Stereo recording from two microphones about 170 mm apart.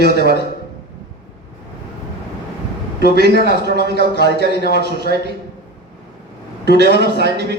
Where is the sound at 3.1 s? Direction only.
80° right.